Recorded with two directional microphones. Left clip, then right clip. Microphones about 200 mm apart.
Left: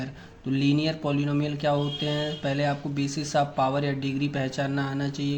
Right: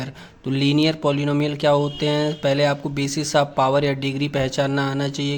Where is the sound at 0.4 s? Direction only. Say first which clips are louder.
Right 6 dB; 40° right (ahead or behind).